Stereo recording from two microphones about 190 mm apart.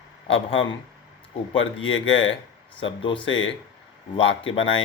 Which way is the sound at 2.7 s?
25° left (ahead or behind).